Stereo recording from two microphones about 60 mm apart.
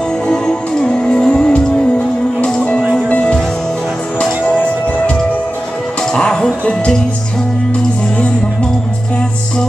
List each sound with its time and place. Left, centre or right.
0.3 s music: centre
2.8 s music: right
3.1 s music: left
6.1 s music: centre